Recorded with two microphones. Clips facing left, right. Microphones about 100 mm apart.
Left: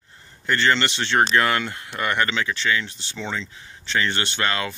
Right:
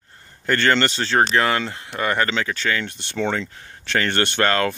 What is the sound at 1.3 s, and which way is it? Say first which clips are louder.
Speech: right 1 dB; 30° right (ahead or behind).